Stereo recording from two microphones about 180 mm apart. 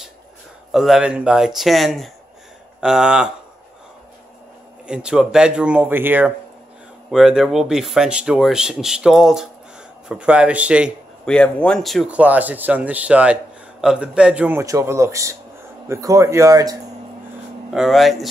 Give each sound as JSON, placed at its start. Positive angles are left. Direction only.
{"t": 0.7, "sound": "speech", "side_deg": 0}
{"t": 4.8, "sound": "speech", "side_deg": -5}
{"t": 11.2, "sound": "speech", "side_deg": 5}
{"t": 17.7, "sound": "speech", "side_deg": 0}